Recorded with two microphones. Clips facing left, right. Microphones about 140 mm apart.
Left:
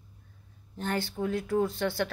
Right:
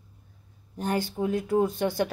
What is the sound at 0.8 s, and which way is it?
Speech, 15° right (ahead or behind).